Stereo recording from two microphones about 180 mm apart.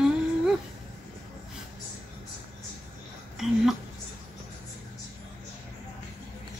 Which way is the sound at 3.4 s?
Centre (ahead or behind).